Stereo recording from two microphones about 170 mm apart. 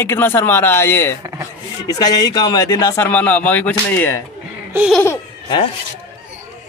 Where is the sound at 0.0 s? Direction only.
15° left (ahead or behind).